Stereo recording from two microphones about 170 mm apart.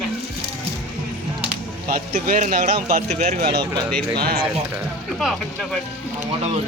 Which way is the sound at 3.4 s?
70° right (ahead or behind).